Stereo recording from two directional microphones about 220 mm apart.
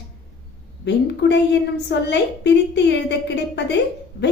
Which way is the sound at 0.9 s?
50° left (ahead or behind).